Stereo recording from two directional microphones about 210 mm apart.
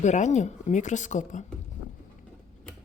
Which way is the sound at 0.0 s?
35° left (ahead or behind).